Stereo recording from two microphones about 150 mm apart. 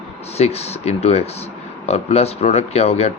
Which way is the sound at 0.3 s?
45° left (ahead or behind).